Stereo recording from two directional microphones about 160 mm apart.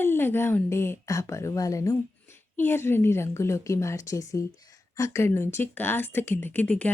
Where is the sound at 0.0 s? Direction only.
15° left (ahead or behind).